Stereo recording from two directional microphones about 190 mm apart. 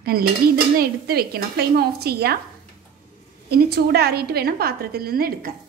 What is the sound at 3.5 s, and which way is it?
A woman's voice, 55° right (ahead or behind).